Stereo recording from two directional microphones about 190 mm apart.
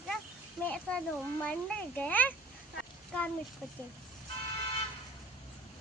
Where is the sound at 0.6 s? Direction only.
5° left (ahead or behind).